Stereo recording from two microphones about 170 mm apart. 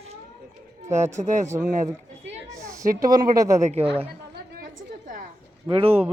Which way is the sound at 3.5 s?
40° right (ahead or behind).